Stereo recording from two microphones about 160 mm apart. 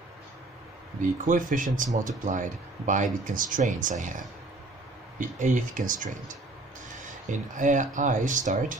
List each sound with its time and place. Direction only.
1.2 s speech: 55° right (ahead or behind)